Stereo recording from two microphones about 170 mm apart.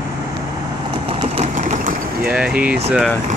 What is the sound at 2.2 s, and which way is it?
Speech, 5° right (ahead or behind).